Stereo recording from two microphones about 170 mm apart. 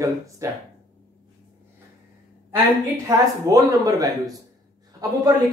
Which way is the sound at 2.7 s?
20° right (ahead or behind).